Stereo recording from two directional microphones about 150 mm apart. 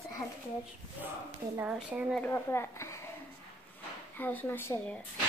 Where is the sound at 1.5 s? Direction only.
10° right (ahead or behind).